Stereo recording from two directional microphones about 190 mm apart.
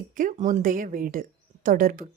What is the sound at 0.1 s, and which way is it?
Speech, 45° right (ahead or behind).